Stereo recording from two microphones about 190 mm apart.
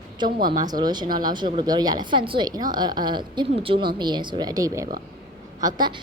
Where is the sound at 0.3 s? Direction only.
50° right (ahead or behind).